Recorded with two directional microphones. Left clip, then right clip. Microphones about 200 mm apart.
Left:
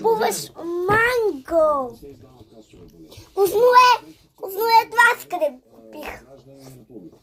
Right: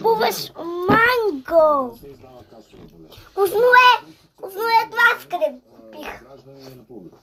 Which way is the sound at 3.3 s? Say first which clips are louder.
Even; 40° left (ahead or behind).